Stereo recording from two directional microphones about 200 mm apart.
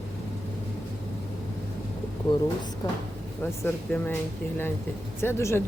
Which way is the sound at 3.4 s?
10° left (ahead or behind).